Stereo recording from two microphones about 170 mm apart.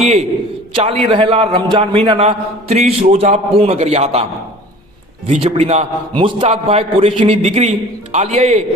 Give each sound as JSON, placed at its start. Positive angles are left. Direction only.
{"t": 0.0, "sound": "a man's voice", "side_deg": -40}